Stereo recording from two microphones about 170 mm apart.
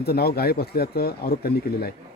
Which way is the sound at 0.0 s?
70° left (ahead or behind).